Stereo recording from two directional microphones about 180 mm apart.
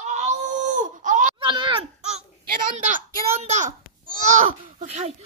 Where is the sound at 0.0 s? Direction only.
40° right (ahead or behind).